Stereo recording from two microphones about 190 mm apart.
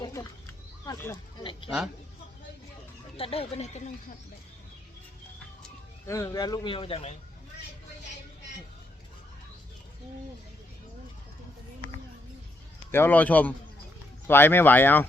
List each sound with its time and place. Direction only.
0.0 s a sound: 20° left (ahead or behind)
0.9 s speech: 15° left (ahead or behind)
3.2 s speech: 30° left (ahead or behind)
6.1 s speech: 15° left (ahead or behind); by 7.2 s 30° left (ahead or behind)
12.9 s speech: 10° left (ahead or behind)